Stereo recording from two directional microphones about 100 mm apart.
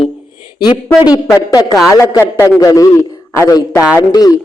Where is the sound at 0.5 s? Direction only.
50° left (ahead or behind).